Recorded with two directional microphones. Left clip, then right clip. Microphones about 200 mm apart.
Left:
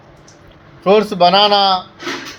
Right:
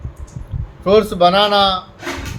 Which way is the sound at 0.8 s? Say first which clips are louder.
Left 1 dB; 10° left (ahead or behind).